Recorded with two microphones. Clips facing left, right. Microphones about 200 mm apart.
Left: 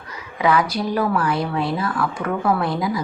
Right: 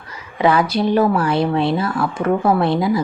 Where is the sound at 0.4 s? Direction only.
25° right (ahead or behind).